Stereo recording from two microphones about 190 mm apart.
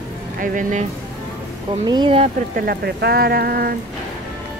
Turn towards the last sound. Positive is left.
turn(degrees=-50)  # may be behind; listen again after turning